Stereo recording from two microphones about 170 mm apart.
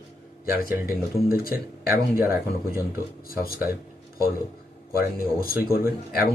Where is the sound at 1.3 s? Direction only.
60° left (ahead or behind).